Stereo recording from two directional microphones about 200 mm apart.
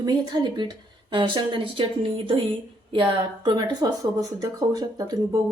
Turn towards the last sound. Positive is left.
turn(degrees=-20)  # may be behind; listen again after turning